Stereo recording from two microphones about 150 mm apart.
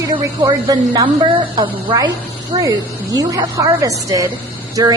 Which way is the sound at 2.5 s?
40° right (ahead or behind).